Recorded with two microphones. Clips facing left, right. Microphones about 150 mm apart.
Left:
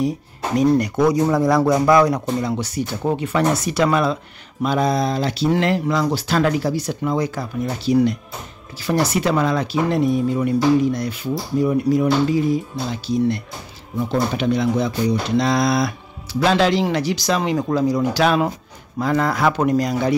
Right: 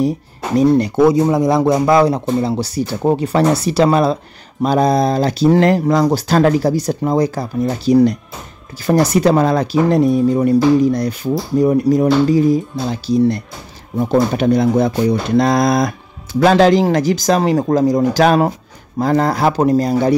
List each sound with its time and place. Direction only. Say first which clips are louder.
0.6 s speech: right 5 dB; 30° right (ahead or behind)